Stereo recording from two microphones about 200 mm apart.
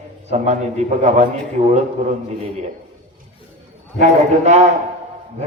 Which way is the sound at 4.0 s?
35° right (ahead or behind).